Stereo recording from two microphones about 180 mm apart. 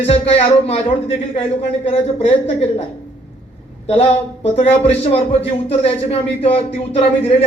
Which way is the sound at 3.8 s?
35° left (ahead or behind).